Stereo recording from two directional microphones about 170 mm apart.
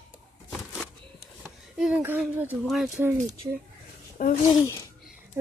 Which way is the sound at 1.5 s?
5° right (ahead or behind).